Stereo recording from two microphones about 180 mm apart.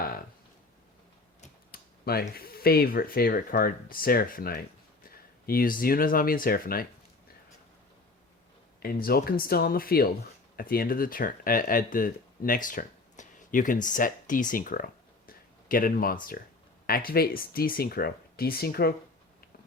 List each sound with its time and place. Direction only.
1.7 s speech: 60° left (ahead or behind)
8.8 s speech: 55° left (ahead or behind)
15.3 s a sound: 50° left (ahead or behind)
16.3 s speech: 55° left (ahead or behind)